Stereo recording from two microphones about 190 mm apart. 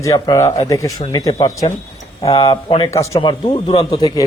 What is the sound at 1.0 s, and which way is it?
A man's voice, 25° left (ahead or behind).